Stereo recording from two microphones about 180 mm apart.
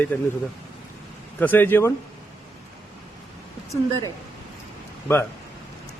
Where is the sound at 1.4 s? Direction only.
10° left (ahead or behind).